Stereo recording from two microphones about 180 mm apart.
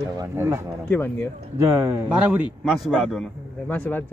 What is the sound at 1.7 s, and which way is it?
Speech, 15° right (ahead or behind).